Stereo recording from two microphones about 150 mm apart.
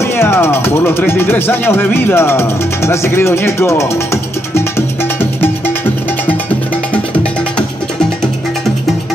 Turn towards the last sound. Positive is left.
turn(degrees=10)  # may be behind; listen again after turning